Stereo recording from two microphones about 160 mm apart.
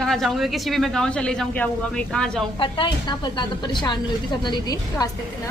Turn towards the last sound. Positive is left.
turn(degrees=25)  # may be behind; listen again after turning